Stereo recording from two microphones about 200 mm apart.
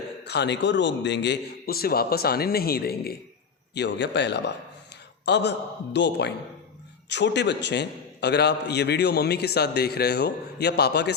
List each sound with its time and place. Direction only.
0.3 s a man's voice: 60° left (ahead or behind)
3.8 s a man's voice: 60° left (ahead or behind)